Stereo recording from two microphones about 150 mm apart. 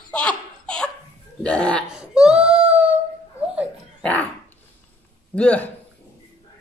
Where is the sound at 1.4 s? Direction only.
10° left (ahead or behind).